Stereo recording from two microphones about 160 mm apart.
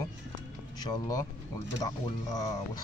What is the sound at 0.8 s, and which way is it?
A man's voice, 25° left (ahead or behind).